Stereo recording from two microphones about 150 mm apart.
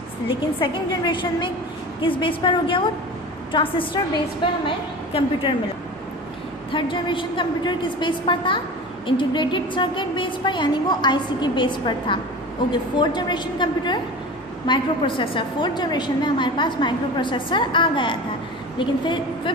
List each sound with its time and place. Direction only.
0.3 s a woman's voice: 35° left (ahead or behind)
5.1 s a woman's voice: 35° left (ahead or behind)
6.7 s a woman's voice: 35° left (ahead or behind)